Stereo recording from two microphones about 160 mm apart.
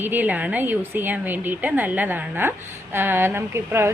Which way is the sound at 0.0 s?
10° right (ahead or behind).